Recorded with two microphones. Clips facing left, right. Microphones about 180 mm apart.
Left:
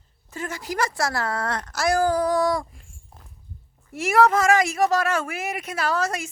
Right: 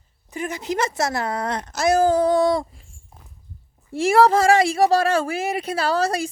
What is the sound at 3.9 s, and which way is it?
Speech, 30° right (ahead or behind).